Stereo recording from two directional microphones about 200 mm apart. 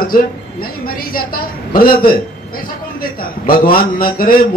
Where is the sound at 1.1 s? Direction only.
45° left (ahead or behind).